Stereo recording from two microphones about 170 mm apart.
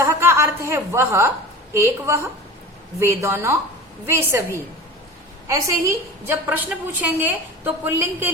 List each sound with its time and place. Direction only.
0.0 s chuckle: 15° right (ahead or behind)
1.7 s a woman's voice: 15° right (ahead or behind)
5.5 s a woman's voice: 20° right (ahead or behind)